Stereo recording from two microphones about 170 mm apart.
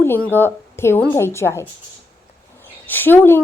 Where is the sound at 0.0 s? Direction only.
10° left (ahead or behind).